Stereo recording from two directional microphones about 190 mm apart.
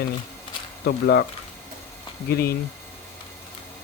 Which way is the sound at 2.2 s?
55° left (ahead or behind).